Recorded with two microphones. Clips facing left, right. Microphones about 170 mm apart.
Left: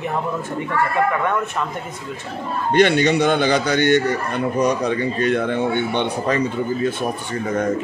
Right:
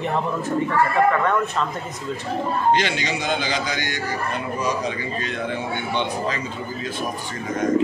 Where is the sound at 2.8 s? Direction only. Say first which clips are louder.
Left 10 dB; 60° left (ahead or behind).